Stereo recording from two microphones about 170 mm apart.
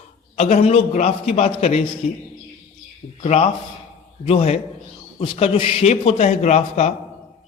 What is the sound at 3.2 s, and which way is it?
A man's voice, 40° left (ahead or behind).